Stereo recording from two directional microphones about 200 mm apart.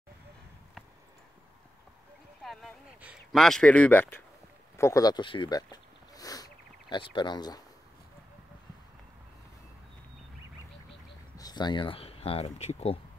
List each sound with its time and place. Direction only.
2.4 s speech: centre (ahead or behind)
4.7 s a sound: 15° left (ahead or behind)
11.3 s speech: 20° left (ahead or behind)